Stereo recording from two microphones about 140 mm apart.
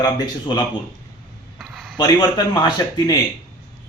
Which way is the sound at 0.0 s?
30° left (ahead or behind).